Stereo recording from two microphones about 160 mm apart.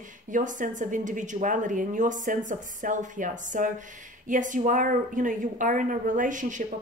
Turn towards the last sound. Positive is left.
turn(degrees=-50)  # may be behind; listen again after turning